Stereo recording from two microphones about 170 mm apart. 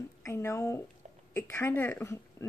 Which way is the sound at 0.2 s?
15° left (ahead or behind).